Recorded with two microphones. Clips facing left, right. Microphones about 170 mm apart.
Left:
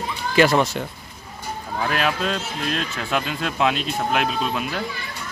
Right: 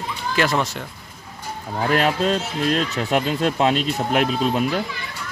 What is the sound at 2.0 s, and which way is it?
Speech, 35° right (ahead or behind).